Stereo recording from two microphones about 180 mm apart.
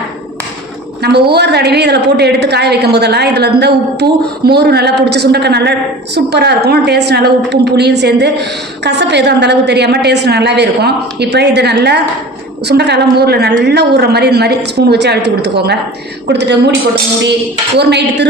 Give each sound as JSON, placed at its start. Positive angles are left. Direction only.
{"t": 1.0, "sound": "a woman's voice", "side_deg": -65}
{"t": 17.7, "sound": "a woman's voice", "side_deg": -70}